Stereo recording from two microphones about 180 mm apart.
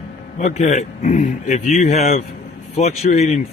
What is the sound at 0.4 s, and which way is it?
Speech, 40° left (ahead or behind).